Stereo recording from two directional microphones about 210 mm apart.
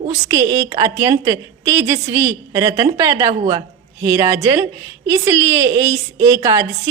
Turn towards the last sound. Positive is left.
turn(degrees=-15)  # may be behind; listen again after turning